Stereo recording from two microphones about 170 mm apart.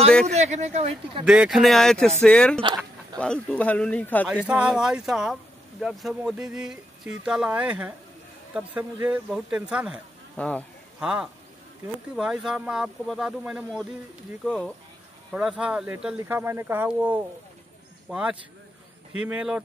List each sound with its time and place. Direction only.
0.3 s speech: 40° right (ahead or behind)
1.2 s speech: 5° right (ahead or behind)
4.5 s speech: 5° right (ahead or behind)
10.3 s speech: 10° left (ahead or behind)
11.0 s speech: 5° right (ahead or behind)
15.3 s speech: 5° right (ahead or behind)